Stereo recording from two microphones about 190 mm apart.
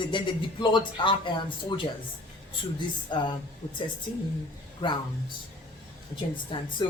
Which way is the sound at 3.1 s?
25° left (ahead or behind).